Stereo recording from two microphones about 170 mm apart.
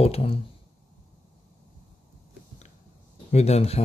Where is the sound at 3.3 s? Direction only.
40° left (ahead or behind).